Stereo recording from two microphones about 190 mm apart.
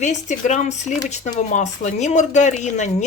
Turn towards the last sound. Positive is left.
turn(degrees=40)  # may be behind; listen again after turning